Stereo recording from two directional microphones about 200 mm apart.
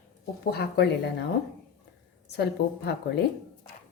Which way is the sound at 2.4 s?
55° left (ahead or behind).